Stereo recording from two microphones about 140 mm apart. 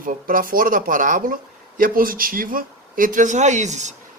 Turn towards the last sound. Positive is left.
turn(degrees=-55)  # may be behind; listen again after turning